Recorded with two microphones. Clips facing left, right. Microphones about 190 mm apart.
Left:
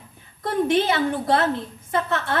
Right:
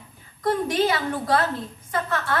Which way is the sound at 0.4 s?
25° left (ahead or behind).